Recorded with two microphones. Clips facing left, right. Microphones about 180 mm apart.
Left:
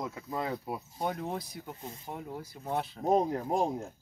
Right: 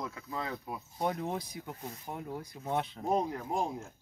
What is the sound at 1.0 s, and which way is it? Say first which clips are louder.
Speech: right 2 dB; centre (ahead or behind).